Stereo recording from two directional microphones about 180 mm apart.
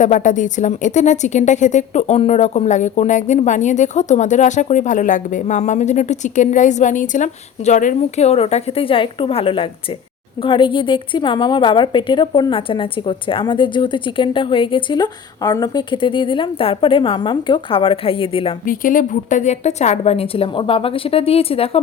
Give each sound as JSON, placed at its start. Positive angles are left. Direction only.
{"t": 0.0, "sound": "a woman's voice", "side_deg": 45}
{"t": 18.6, "sound": "speech", "side_deg": 50}